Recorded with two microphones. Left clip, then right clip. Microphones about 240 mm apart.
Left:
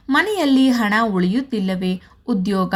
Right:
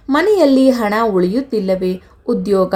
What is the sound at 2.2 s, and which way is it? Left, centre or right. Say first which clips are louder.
Speech: right 6 dB; left.